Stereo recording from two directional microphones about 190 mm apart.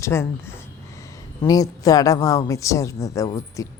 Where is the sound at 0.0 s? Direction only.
15° left (ahead or behind).